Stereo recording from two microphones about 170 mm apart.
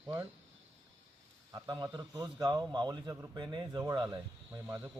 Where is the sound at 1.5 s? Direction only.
20° right (ahead or behind).